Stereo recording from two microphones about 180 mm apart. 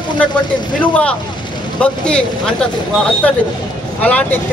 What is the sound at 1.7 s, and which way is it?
Speech, 5° left (ahead or behind).